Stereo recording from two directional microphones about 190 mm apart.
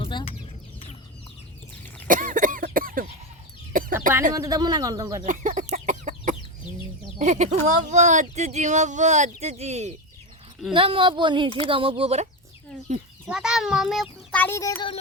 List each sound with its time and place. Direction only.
0.0 s chicken: 25° left (ahead or behind)
2.0 s cough: 45° right (ahead or behind)
3.7 s chicken: 45° right (ahead or behind)
4.3 s speech: 20° right (ahead or behind)
5.2 s chicken: 40° right (ahead or behind)
7.2 s speech: 40° right (ahead or behind)
13.2 s a child's voice: 5° right (ahead or behind)
14.4 s a child's voice: 15° left (ahead or behind)